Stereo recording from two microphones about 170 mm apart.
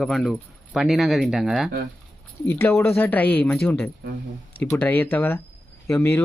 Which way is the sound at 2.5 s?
15° left (ahead or behind).